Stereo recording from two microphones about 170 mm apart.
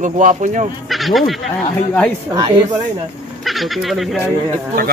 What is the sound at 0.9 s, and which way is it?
Speech, centre (ahead or behind).